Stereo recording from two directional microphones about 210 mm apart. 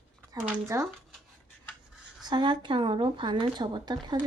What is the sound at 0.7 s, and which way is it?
Speech, 15° right (ahead or behind).